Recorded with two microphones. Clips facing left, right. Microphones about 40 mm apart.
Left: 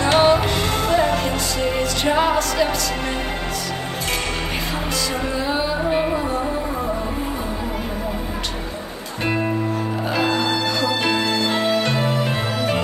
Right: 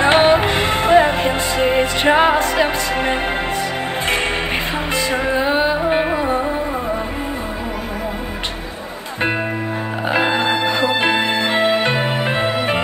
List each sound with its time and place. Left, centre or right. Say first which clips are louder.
0.0 s music: right 3 dB; right
4.9 s music: right 7 dB; right
10.0 s music: right 4 dB; right